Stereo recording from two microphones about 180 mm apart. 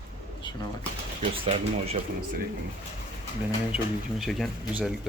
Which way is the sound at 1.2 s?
35° right (ahead or behind).